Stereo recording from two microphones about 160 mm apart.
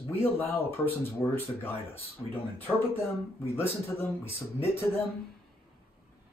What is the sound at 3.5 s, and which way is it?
Speech, 15° left (ahead or behind).